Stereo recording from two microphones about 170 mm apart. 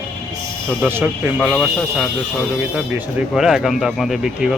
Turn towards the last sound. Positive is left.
turn(degrees=0)  # may be behind; listen again after turning